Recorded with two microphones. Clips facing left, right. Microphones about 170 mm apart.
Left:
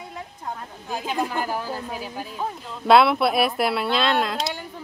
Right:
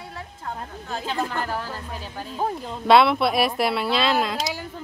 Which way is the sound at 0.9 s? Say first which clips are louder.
Left 1 dB; 15° left (ahead or behind).